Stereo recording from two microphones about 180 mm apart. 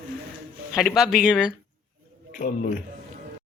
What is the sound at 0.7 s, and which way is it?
Speech, centre (ahead or behind).